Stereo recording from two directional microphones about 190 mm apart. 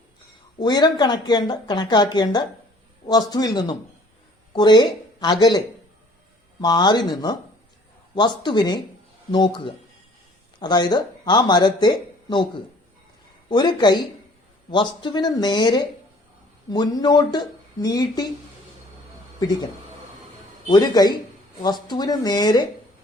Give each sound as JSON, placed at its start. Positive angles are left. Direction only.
{"t": 0.6, "sound": "a woman's voice", "side_deg": 25}
{"t": 13.5, "sound": "a woman's voice", "side_deg": 25}
{"t": 20.7, "sound": "a woman's voice", "side_deg": 20}